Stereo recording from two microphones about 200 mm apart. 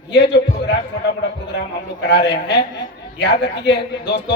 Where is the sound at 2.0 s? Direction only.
55° left (ahead or behind).